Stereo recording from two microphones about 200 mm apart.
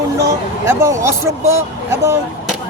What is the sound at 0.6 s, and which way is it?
Speech, 15° right (ahead or behind).